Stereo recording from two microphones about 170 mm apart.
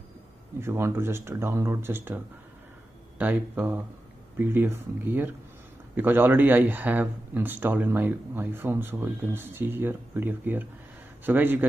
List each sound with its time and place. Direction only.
0.6 s a man's voice: 15° right (ahead or behind)